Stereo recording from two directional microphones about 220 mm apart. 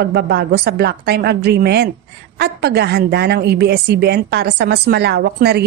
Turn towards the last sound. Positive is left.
turn(degrees=-45)  # may be behind; listen again after turning